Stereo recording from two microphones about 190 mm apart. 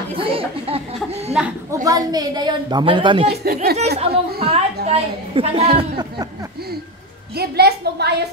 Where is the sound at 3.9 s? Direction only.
30° right (ahead or behind).